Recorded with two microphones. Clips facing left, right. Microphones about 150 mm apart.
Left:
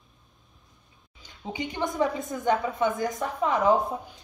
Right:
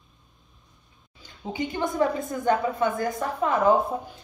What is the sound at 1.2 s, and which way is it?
A woman's voice, 20° left (ahead or behind).